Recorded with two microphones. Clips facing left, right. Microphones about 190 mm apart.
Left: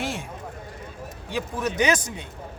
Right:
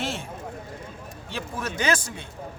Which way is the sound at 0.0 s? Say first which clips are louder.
Left 1 dB; 15° left (ahead or behind).